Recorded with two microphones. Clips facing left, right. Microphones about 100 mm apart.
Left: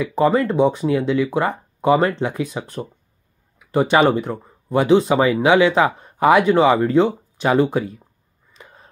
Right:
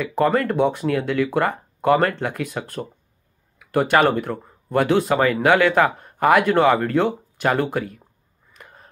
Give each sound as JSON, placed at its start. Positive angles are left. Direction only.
{"t": 0.2, "sound": "speech", "side_deg": 15}